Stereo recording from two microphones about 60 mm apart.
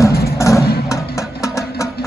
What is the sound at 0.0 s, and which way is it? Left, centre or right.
Music, left.